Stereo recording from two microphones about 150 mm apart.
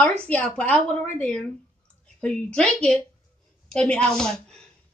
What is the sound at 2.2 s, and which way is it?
A woman's voice, 5° left (ahead or behind).